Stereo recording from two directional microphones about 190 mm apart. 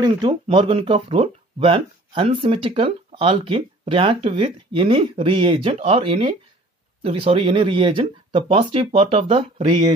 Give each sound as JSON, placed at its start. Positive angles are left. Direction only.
{"t": 0.0, "sound": "speech", "side_deg": -25}